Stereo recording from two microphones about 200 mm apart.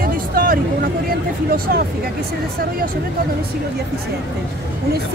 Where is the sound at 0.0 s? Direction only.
45° right (ahead or behind).